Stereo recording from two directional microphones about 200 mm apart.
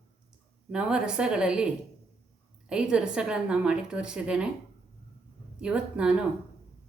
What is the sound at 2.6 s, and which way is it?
A woman's voice, 5° right (ahead or behind).